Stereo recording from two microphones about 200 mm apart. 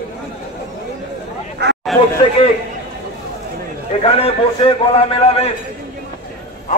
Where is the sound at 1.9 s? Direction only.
Centre (ahead or behind).